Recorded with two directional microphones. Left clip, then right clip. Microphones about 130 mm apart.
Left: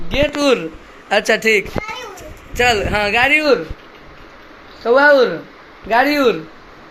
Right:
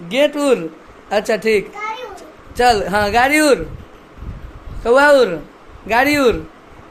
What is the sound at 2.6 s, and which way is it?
Speech, 25° right (ahead or behind).